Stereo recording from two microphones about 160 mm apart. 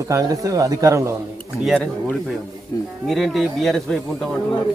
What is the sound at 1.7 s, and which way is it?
Speech, 5° left (ahead or behind).